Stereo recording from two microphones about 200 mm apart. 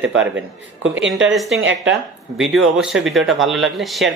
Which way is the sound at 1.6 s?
70° right (ahead or behind).